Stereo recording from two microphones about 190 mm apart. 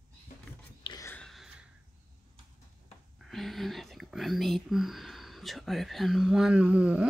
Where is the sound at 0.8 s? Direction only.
20° left (ahead or behind).